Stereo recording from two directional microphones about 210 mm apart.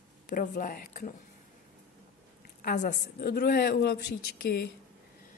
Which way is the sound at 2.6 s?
40° left (ahead or behind).